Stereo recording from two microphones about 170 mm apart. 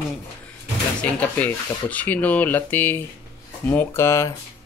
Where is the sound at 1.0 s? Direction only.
5° left (ahead or behind).